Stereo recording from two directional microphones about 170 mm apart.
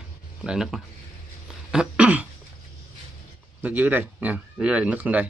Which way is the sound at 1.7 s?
5° right (ahead or behind).